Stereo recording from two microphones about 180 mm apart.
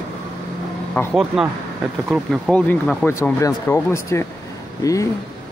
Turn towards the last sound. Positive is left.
turn(degrees=20)  # may be behind; listen again after turning